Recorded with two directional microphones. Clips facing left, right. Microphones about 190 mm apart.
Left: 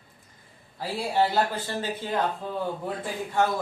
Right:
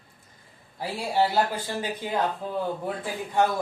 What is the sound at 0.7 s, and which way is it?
A man's voice, 10° right (ahead or behind).